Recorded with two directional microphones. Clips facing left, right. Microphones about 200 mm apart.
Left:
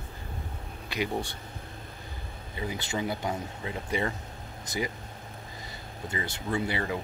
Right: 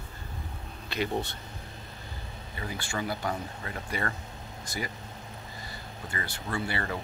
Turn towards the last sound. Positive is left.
turn(degrees=15)  # may be behind; listen again after turning